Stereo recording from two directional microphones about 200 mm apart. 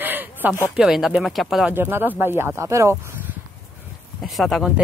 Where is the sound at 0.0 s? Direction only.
10° right (ahead or behind).